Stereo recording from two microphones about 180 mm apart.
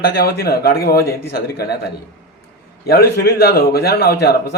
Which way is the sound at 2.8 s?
60° left (ahead or behind).